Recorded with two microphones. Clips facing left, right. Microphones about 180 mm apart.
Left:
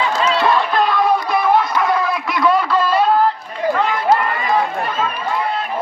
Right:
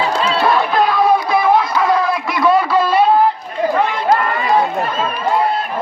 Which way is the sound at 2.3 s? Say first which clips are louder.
Right 2 dB; 10° right (ahead or behind).